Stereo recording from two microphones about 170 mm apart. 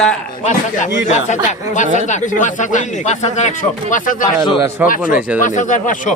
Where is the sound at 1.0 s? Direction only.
45° left (ahead or behind).